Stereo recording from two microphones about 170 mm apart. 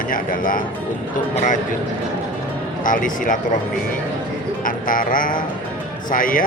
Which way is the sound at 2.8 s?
50° left (ahead or behind).